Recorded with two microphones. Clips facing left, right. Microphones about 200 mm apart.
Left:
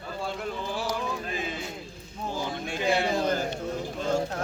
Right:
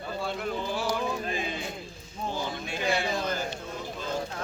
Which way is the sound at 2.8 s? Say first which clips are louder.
Left 3 dB; 25° left (ahead or behind).